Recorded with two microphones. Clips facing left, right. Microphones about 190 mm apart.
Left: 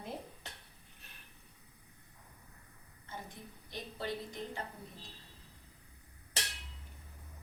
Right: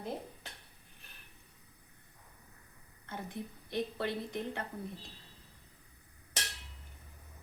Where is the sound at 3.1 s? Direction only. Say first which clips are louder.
Right 6 dB; 60° right (ahead or behind).